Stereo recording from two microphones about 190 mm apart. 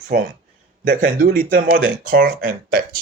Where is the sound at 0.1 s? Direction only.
50° right (ahead or behind).